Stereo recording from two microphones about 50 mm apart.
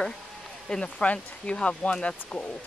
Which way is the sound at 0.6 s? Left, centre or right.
Centre.